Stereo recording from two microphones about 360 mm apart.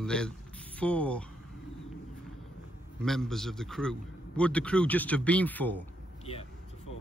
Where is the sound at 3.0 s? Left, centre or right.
Centre.